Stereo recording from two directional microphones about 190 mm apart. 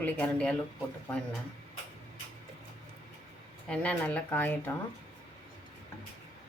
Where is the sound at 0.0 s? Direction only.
5° left (ahead or behind).